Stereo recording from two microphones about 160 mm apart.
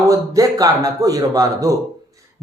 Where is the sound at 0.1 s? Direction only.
20° right (ahead or behind).